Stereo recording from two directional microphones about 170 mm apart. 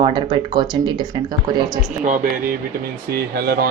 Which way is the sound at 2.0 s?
50° right (ahead or behind).